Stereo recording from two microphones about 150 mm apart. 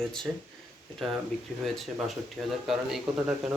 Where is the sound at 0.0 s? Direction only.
5° left (ahead or behind).